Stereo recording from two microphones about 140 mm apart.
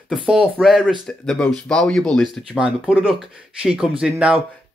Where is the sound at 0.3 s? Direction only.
5° right (ahead or behind).